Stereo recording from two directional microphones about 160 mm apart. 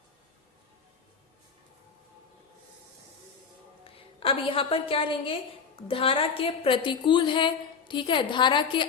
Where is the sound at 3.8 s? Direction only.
35° left (ahead or behind).